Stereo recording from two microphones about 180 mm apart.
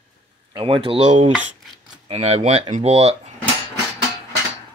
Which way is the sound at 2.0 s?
35° right (ahead or behind).